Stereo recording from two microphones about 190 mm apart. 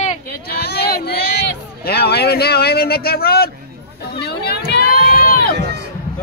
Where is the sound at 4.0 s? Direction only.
60° left (ahead or behind).